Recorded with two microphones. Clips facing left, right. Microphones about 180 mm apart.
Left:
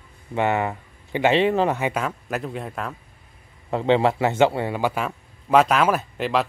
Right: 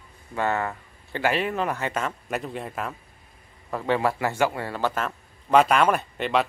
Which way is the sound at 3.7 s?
25° left (ahead or behind).